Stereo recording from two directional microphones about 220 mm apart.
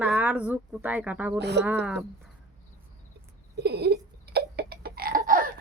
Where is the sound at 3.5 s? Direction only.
50° right (ahead or behind).